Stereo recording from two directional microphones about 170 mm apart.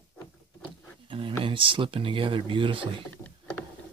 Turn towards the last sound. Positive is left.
turn(degrees=10)  # may be behind; listen again after turning